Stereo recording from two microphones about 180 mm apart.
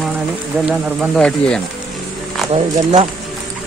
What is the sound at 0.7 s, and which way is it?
Speech, 5° left (ahead or behind).